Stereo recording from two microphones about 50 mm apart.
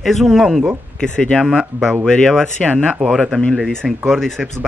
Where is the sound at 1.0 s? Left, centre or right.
Left.